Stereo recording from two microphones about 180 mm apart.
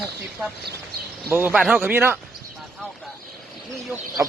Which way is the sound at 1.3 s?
10° right (ahead or behind).